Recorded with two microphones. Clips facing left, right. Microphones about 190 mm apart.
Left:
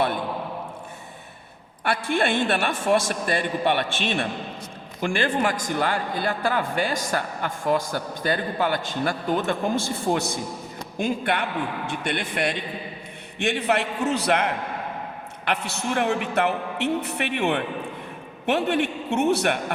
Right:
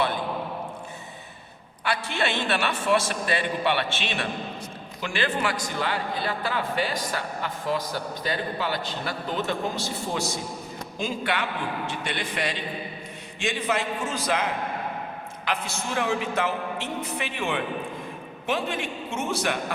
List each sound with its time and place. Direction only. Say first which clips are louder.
1.8 s a man's voice: left 4 dB; 55° left (ahead or behind)